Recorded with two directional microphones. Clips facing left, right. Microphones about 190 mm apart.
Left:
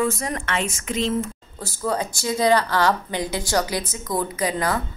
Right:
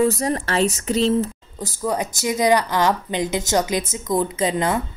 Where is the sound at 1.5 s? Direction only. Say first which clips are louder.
Right 1 dB; 15° right (ahead or behind).